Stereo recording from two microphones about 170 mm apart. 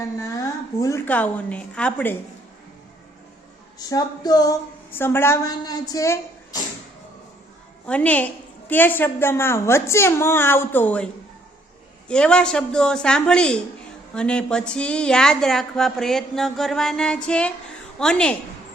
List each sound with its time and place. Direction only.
0.2 s a woman's voice: 20° left (ahead or behind)
3.8 s a woman's voice: 20° left (ahead or behind)
7.9 s a woman's voice: 10° left (ahead or behind)